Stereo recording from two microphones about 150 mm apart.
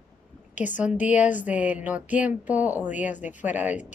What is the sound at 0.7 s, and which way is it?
A woman's voice, 10° right (ahead or behind).